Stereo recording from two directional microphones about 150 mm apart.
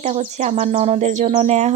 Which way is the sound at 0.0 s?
45° right (ahead or behind).